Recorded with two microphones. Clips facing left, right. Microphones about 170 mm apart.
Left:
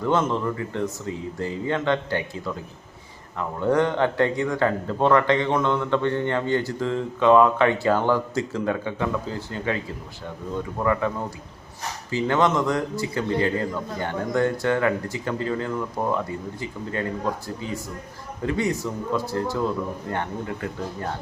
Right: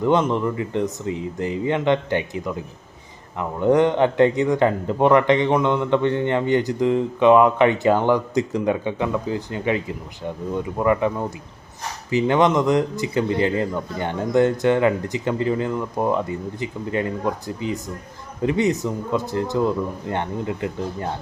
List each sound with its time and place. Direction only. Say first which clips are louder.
0.0 s a man's voice: right 4 dB; 20° right (ahead or behind)